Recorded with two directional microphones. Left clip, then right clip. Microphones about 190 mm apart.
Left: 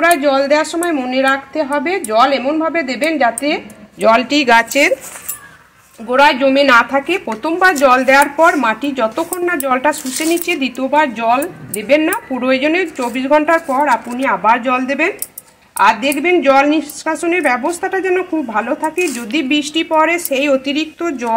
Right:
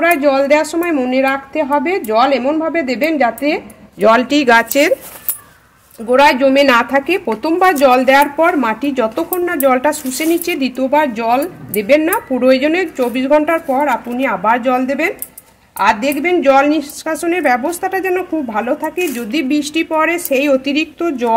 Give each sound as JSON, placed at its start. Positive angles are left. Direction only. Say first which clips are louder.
{"t": 0.0, "sound": "a woman's voice", "louder": "even", "side_deg": -45}
{"t": 6.0, "sound": "a woman's voice", "louder": "right 1 dB", "side_deg": -40}